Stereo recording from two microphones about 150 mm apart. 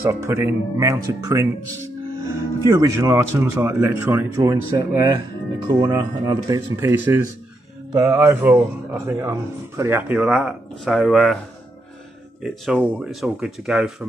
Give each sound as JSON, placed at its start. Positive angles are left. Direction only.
{"t": 0.0, "sound": "speech", "side_deg": -20}
{"t": 2.7, "sound": "speech", "side_deg": -20}
{"t": 7.9, "sound": "speech", "side_deg": -20}
{"t": 12.4, "sound": "speech", "side_deg": 0}